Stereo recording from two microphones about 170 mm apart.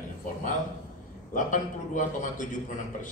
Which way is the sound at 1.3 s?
50° left (ahead or behind).